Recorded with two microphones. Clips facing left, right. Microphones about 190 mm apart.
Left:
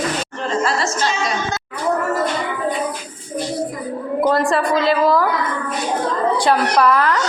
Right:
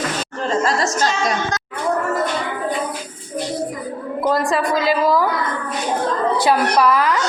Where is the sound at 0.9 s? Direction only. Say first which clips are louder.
Right 1 dB; 45° right (ahead or behind).